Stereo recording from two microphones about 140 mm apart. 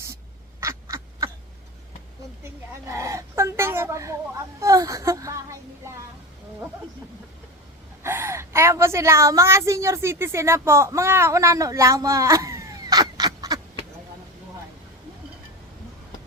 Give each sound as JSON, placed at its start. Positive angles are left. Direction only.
{"t": 0.6, "sound": "duck", "side_deg": -20}
{"t": 2.4, "sound": "a sound", "side_deg": -20}
{"t": 8.0, "sound": "a woman's voice", "side_deg": -20}